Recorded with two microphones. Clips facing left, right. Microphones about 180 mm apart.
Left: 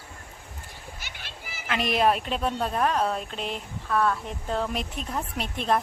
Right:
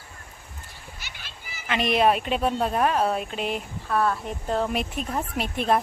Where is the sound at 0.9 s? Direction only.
50° left (ahead or behind).